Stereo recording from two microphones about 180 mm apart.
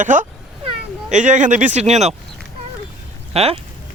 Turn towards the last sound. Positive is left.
turn(degrees=-35)  # may be behind; listen again after turning